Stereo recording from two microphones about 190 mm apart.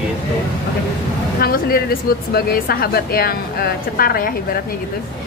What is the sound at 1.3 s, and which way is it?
A woman's voice, 50° left (ahead or behind).